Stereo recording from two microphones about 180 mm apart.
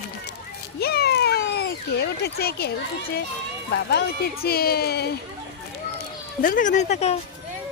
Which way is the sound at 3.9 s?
60° left (ahead or behind).